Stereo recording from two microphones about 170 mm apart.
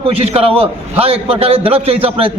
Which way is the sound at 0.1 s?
35° right (ahead or behind).